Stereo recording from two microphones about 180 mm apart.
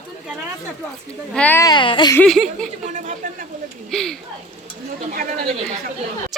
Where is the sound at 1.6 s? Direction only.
25° left (ahead or behind).